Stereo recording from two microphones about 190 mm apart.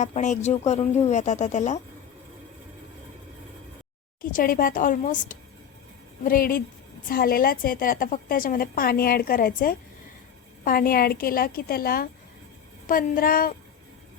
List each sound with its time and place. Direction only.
0.0 s speech: 40° left (ahead or behind)
4.2 s a woman's voice: 45° left (ahead or behind)